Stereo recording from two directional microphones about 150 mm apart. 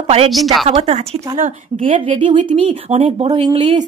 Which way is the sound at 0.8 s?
45° right (ahead or behind).